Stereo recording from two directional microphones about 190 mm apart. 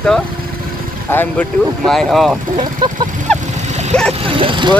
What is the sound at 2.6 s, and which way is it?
Speech, 25° right (ahead or behind).